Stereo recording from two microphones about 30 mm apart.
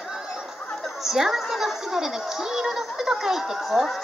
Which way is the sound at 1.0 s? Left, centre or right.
Centre.